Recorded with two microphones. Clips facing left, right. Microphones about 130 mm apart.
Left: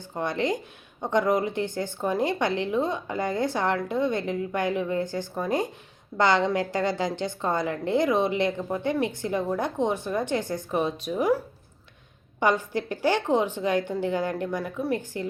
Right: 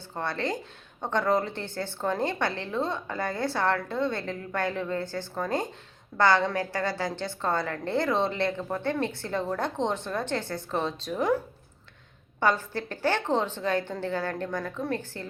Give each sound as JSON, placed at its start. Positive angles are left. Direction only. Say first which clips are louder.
{"t": 0.1, "sound": "a woman's voice", "louder": "left 4 dB", "side_deg": 15}
{"t": 12.4, "sound": "a woman's voice", "louder": "left 2 dB", "side_deg": 15}